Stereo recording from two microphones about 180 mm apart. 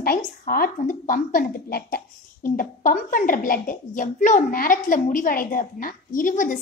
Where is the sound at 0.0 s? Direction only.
55° left (ahead or behind).